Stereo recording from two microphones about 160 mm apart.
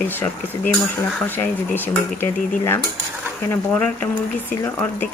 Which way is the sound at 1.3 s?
10° left (ahead or behind).